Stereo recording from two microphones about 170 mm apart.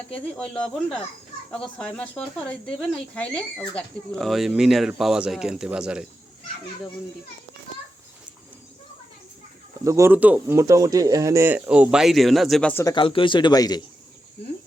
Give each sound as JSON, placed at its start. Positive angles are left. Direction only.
{"t": 0.1, "sound": "speech", "side_deg": 5}
{"t": 9.8, "sound": "speech", "side_deg": -15}
{"t": 12.7, "sound": "speech", "side_deg": 25}